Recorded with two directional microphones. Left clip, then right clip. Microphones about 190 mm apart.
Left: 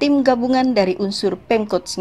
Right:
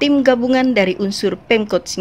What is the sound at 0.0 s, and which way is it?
Speech, 25° right (ahead or behind).